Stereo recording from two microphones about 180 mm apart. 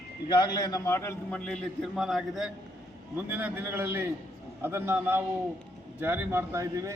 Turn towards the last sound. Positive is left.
turn(degrees=-15)  # may be behind; listen again after turning